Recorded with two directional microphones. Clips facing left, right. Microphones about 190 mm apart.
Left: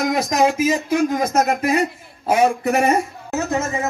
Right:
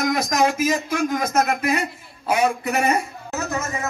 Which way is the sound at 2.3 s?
40° left (ahead or behind).